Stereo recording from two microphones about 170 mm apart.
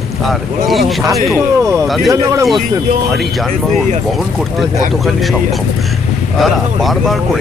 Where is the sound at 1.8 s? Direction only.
Centre (ahead or behind).